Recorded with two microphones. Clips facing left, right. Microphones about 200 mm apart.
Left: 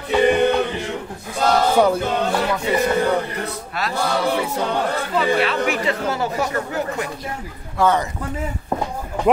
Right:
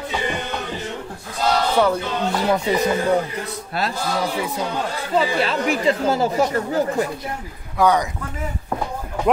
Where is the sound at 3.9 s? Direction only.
65° left (ahead or behind).